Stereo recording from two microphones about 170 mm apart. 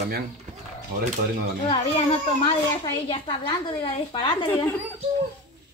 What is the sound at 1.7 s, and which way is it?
A child's voice, 30° left (ahead or behind).